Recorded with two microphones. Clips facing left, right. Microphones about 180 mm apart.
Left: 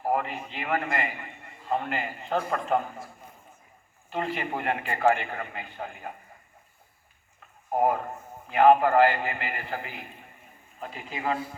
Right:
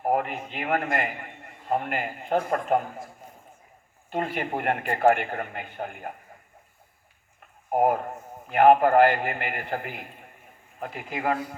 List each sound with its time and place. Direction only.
0.0 s a man's voice: 55° right (ahead or behind)
4.1 s a man's voice: 55° right (ahead or behind)
8.4 s a man's voice: 55° right (ahead or behind)